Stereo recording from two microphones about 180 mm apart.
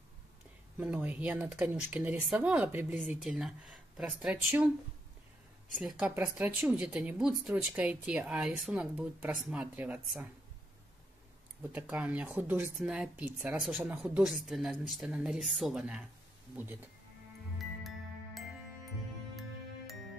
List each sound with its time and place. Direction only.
0.7 s a woman's voice: 10° right (ahead or behind)
5.8 s speech: 5° right (ahead or behind)
11.7 s a woman's voice: 10° right (ahead or behind)
17.6 s music: centre (ahead or behind)